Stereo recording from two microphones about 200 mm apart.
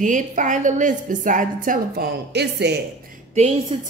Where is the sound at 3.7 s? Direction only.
25° right (ahead or behind).